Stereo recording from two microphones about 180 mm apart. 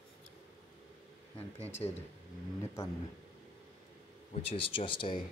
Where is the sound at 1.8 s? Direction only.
30° left (ahead or behind).